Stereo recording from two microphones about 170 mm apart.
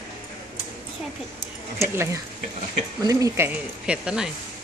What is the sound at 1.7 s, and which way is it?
Speech, 15° right (ahead or behind).